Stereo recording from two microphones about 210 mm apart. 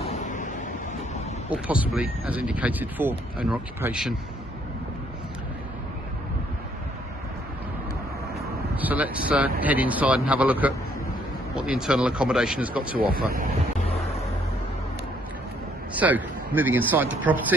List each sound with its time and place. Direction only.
0.0 s waves: 35° left (ahead or behind)
1.5 s speech: 5° right (ahead or behind)
8.7 s speech: 10° right (ahead or behind)
13.3 s speech: 45° right (ahead or behind)
15.9 s a man's voice: 10° right (ahead or behind)